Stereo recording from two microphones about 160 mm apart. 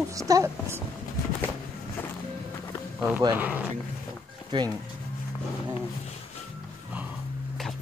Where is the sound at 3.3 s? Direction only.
10° right (ahead or behind).